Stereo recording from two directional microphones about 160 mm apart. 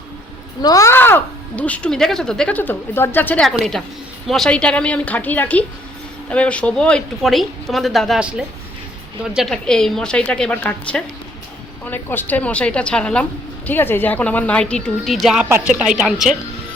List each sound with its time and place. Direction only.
0.6 s speech: 20° left (ahead or behind); by 15.4 s centre (ahead or behind)
15.4 s speech: 15° right (ahead or behind)
15.7 s speech: 5° right (ahead or behind)